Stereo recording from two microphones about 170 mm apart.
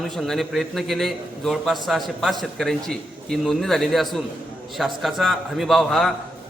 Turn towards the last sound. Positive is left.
turn(degrees=0)  # may be behind; listen again after turning